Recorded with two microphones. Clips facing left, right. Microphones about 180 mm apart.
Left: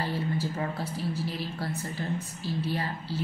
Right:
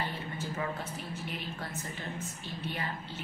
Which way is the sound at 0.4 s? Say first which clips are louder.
Left 4 dB; 35° left (ahead or behind).